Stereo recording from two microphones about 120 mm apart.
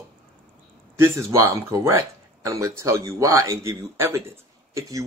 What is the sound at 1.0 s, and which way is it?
Speech, 20° right (ahead or behind).